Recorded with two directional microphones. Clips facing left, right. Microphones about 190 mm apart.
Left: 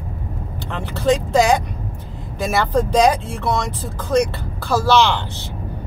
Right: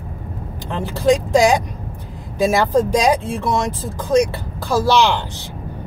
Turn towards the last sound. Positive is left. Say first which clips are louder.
# even
turn(degrees=-15)  # may be behind; listen again after turning